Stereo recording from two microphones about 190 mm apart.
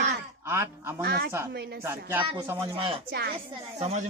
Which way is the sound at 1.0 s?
55° right (ahead or behind).